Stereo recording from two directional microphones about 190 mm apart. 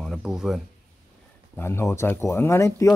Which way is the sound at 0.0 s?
Centre (ahead or behind).